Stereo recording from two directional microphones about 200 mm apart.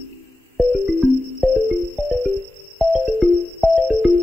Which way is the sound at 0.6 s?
Centre (ahead or behind).